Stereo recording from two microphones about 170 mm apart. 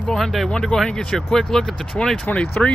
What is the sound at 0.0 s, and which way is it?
Speech, 5° left (ahead or behind).